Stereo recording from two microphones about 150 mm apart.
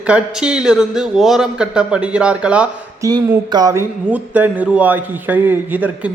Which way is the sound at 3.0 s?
20° right (ahead or behind).